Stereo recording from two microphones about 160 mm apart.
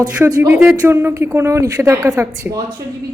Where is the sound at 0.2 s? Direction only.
10° right (ahead or behind).